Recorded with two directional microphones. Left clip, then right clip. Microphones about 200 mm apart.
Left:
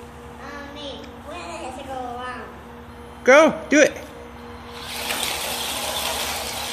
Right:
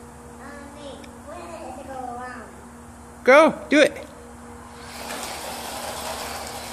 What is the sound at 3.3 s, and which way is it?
Speech, 5° right (ahead or behind).